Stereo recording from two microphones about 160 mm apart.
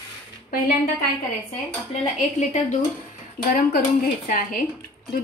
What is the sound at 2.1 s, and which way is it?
Speech, 50° left (ahead or behind).